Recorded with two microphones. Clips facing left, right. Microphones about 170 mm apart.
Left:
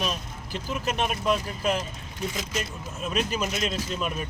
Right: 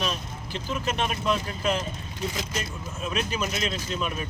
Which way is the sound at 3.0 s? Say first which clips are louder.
Left 1 dB; centre (ahead or behind).